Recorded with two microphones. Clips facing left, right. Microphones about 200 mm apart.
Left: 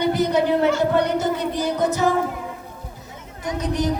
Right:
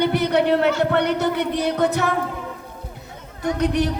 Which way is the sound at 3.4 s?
65° right (ahead or behind).